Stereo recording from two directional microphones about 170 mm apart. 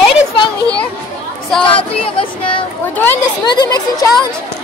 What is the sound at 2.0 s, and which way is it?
Speech, 30° left (ahead or behind).